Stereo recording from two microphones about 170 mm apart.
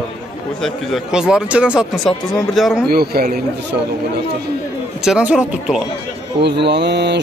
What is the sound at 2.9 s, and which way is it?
Speech, 65° right (ahead or behind).